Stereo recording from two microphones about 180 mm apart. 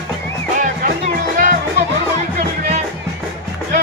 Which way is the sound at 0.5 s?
45° right (ahead or behind).